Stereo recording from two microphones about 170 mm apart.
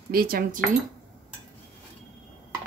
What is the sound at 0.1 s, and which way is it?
Speech, 60° right (ahead or behind).